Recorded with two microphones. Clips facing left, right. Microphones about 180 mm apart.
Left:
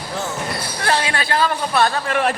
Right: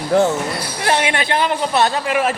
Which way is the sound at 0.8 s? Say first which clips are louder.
Right 3 dB; 20° right (ahead or behind).